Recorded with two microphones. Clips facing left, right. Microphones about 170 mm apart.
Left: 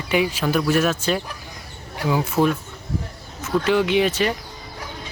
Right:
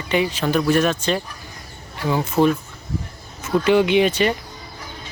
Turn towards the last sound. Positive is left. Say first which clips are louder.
# right 2 dB
turn(degrees=0)  # may be behind; listen again after turning